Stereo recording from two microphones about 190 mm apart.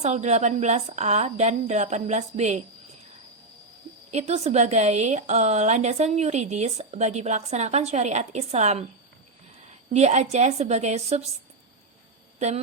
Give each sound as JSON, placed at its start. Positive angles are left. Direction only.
{"t": 0.0, "sound": "a woman's voice", "side_deg": -35}
{"t": 4.1, "sound": "a woman's voice", "side_deg": -35}
{"t": 9.9, "sound": "a woman's voice", "side_deg": -35}